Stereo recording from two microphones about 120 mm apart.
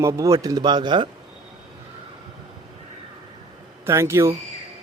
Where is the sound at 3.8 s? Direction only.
25° right (ahead or behind).